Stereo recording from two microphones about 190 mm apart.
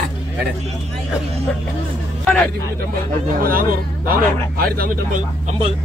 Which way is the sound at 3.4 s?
50° right (ahead or behind).